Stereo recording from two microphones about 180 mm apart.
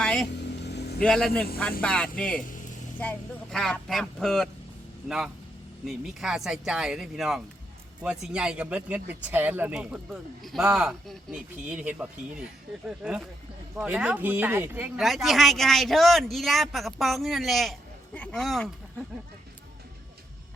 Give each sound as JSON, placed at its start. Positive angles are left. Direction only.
{"t": 0.0, "sound": "vehicle", "side_deg": 5}
{"t": 0.3, "sound": "vehicle", "side_deg": 70}
{"t": 1.0, "sound": "speech", "side_deg": 0}
{"t": 14.9, "sound": "speech", "side_deg": 0}